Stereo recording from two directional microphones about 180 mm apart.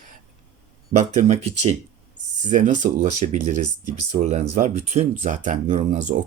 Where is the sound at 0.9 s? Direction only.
40° right (ahead or behind).